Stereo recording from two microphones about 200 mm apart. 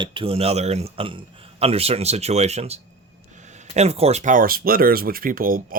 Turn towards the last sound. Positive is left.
turn(degrees=-45)  # may be behind; listen again after turning